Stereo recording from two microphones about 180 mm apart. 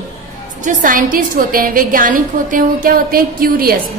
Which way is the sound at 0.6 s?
45° right (ahead or behind).